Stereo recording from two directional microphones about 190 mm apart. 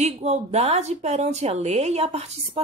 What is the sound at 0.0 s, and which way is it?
A woman's voice, 35° right (ahead or behind).